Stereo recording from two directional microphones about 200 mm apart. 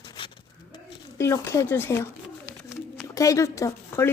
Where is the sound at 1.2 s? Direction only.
15° left (ahead or behind).